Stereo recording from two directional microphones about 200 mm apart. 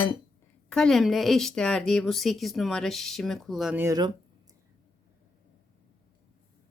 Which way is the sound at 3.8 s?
20° right (ahead or behind).